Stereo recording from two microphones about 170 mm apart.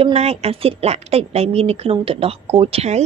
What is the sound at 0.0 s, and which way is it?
Speech, 35° right (ahead or behind).